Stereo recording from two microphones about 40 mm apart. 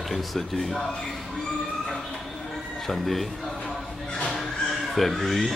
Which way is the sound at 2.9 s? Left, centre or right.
Centre.